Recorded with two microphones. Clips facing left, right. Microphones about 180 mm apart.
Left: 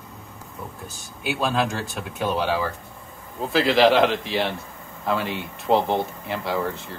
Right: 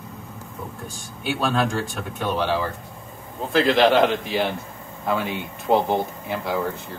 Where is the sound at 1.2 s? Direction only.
5° left (ahead or behind).